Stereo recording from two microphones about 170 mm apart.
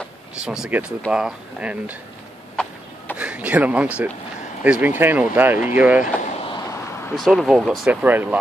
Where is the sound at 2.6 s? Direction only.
5° left (ahead or behind).